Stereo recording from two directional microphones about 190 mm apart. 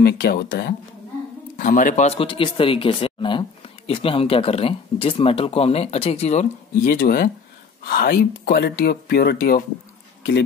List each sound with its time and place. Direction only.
0.0 s speech: 55° left (ahead or behind)
1.6 s speech: 45° left (ahead or behind)